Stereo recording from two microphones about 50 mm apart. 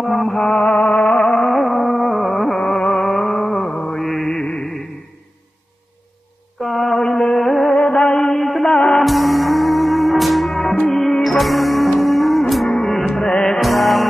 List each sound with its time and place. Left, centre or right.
0.0 s music: centre
2.6 s mantra: centre
4.0 s music: centre
4.4 s music: centre
6.6 s mantra: centre
7.1 s music: left
7.3 s music: centre
7.7 s music: left
9.0 s music: centre
13.6 s music: centre